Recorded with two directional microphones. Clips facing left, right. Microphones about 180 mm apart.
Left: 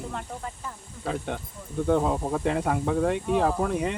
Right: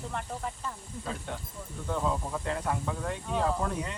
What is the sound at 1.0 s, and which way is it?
Speech, 70° left (ahead or behind).